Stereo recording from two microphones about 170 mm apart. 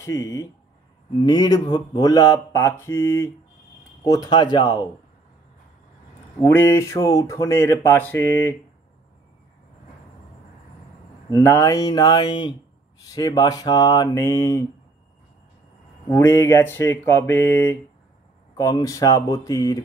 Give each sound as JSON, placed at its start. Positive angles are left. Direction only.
{"t": 0.0, "sound": "speech", "side_deg": 20}
{"t": 6.4, "sound": "speech", "side_deg": 15}
{"t": 11.2, "sound": "speech", "side_deg": 15}
{"t": 16.1, "sound": "speech", "side_deg": 15}